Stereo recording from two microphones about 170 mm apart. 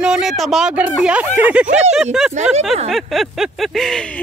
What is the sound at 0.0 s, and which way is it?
A woman's voice, 5° right (ahead or behind).